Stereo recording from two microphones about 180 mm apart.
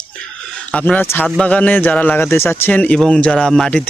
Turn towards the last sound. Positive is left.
turn(degrees=5)  # may be behind; listen again after turning